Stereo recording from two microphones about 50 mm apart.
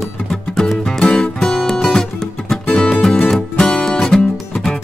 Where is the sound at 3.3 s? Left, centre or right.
Centre.